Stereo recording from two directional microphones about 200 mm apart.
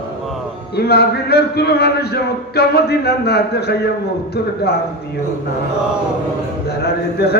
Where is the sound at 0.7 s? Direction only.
55° left (ahead or behind).